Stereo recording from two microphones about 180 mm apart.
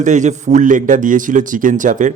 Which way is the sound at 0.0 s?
45° right (ahead or behind).